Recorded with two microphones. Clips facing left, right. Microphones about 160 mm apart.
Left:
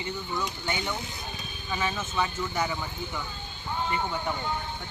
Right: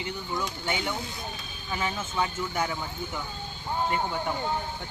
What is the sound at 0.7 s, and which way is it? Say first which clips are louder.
Speech: right 1 dB; 15° right (ahead or behind).